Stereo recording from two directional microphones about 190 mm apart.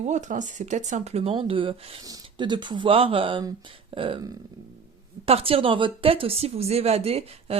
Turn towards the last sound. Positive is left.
turn(degrees=-30)  # may be behind; listen again after turning